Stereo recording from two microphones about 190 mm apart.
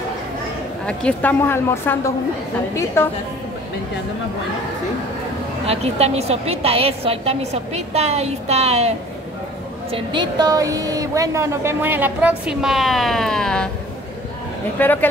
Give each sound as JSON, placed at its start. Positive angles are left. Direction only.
{"t": 0.8, "sound": "a woman's voice", "side_deg": 5}
{"t": 5.7, "sound": "a woman's voice", "side_deg": -35}
{"t": 14.8, "sound": "a woman's voice", "side_deg": 10}